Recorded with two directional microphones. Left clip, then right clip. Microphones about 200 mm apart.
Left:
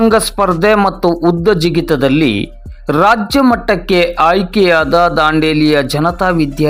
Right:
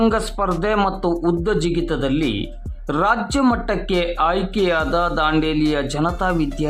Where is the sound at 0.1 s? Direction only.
30° left (ahead or behind).